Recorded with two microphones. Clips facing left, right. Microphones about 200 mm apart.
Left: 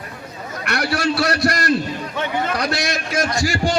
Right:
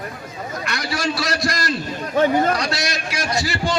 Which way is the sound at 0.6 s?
65° left (ahead or behind).